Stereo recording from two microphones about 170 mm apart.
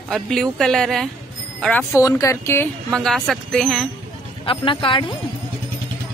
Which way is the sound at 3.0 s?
5° left (ahead or behind).